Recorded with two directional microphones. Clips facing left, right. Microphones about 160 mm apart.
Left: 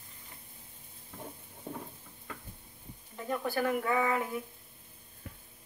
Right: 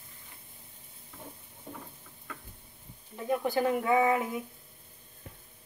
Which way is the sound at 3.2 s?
20° right (ahead or behind).